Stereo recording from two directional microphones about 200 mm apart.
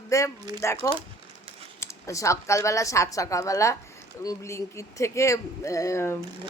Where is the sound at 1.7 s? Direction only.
15° left (ahead or behind).